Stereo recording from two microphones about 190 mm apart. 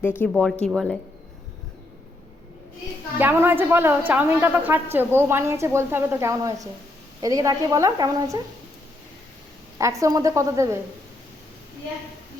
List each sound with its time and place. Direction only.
0.2 s speech: 5° left (ahead or behind)
3.2 s a woman's voice: 10° right (ahead or behind)
9.7 s a woman's voice: 15° right (ahead or behind)